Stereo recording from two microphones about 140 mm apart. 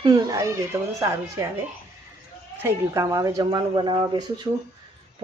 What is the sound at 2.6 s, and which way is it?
Speech, 20° right (ahead or behind).